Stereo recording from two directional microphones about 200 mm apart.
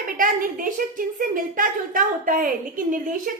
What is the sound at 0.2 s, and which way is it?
A woman's voice, 45° right (ahead or behind).